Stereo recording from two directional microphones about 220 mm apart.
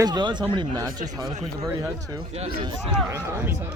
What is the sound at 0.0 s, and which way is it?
Speech, 20° right (ahead or behind).